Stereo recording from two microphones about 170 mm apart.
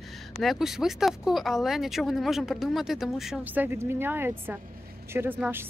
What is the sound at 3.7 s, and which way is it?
Speech, 15° right (ahead or behind).